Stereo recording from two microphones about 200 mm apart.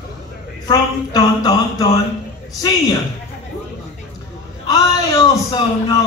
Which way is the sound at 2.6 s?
20° left (ahead or behind).